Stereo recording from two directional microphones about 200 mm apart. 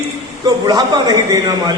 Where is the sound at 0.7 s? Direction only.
20° right (ahead or behind).